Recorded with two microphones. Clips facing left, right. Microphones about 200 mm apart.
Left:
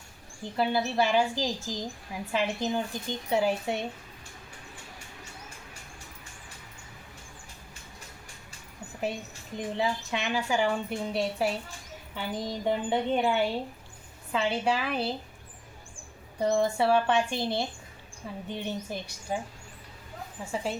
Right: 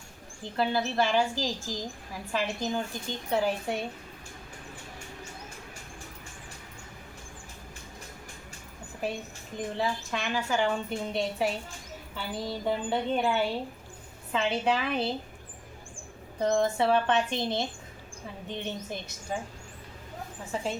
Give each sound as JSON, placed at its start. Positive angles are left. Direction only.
{"t": 0.4, "sound": "a woman's voice", "side_deg": 10}
{"t": 9.6, "sound": "a woman's voice", "side_deg": 15}
{"t": 12.1, "sound": "a woman's voice", "side_deg": 15}
{"t": 16.4, "sound": "a woman's voice", "side_deg": 10}